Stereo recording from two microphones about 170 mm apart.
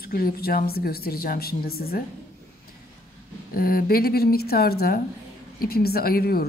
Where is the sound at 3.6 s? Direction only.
60° left (ahead or behind).